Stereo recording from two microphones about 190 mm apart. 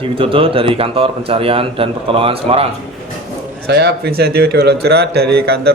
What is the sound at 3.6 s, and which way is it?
Speech, 60° right (ahead or behind).